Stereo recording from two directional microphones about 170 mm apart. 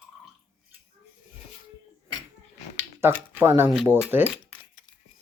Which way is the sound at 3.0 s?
15° right (ahead or behind).